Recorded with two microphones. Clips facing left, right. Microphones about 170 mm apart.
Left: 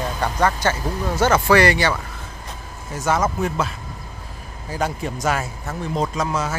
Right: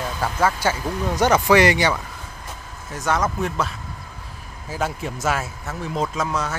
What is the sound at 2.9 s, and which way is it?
Speech, 5° left (ahead or behind).